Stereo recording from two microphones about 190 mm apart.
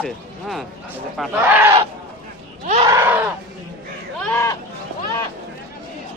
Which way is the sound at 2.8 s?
15° right (ahead or behind).